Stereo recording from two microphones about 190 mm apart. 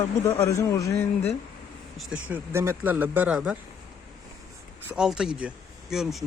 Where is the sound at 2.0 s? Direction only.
5° right (ahead or behind).